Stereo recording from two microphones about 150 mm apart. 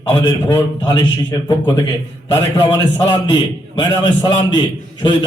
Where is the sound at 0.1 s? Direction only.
25° left (ahead or behind).